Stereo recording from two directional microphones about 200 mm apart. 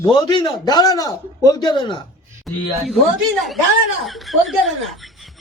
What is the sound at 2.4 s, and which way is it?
Speech, centre (ahead or behind).